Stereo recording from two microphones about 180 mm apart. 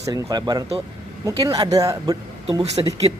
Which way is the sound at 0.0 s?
20° right (ahead or behind).